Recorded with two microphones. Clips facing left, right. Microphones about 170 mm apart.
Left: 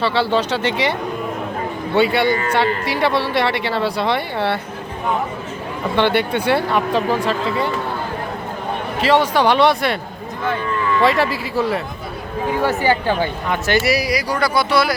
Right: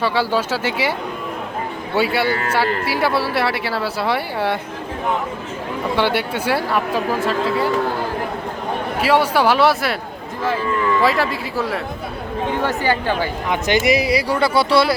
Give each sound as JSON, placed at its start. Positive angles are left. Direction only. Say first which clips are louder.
{"t": 0.0, "sound": "speech", "louder": "left 1 dB", "side_deg": -10}
{"t": 2.0, "sound": "speech", "louder": "left 3 dB", "side_deg": -5}
{"t": 6.0, "sound": "speech", "louder": "left 4 dB", "side_deg": -10}
{"t": 9.0, "sound": "speech", "louder": "left 1 dB", "side_deg": -10}
{"t": 11.0, "sound": "speech", "louder": "left 2 dB", "side_deg": 0}
{"t": 12.6, "sound": "a woman's voice", "louder": "left 3 dB", "side_deg": 15}
{"t": 13.5, "sound": "speech", "louder": "right 2 dB", "side_deg": -15}